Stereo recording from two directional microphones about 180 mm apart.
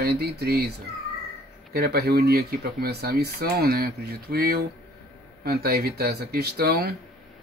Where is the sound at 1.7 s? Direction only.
60° right (ahead or behind).